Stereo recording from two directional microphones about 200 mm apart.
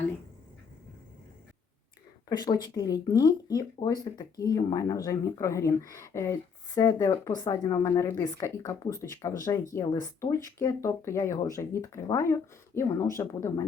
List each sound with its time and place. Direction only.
2.3 s speech: 20° left (ahead or behind)